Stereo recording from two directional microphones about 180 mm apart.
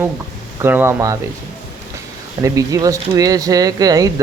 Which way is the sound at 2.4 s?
15° right (ahead or behind).